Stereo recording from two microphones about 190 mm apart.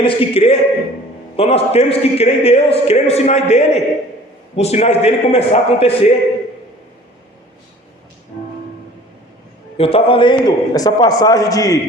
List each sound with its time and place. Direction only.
0.0 s a man's voice: 30° left (ahead or behind)
9.7 s a man's voice: 30° left (ahead or behind)